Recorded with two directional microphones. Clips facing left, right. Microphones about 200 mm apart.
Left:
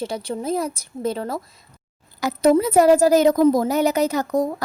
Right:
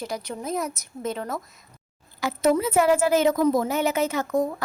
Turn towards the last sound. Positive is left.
turn(degrees=40)  # may be behind; listen again after turning